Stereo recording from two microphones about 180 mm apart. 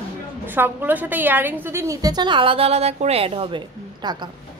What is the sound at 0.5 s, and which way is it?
A woman's voice, 10° right (ahead or behind).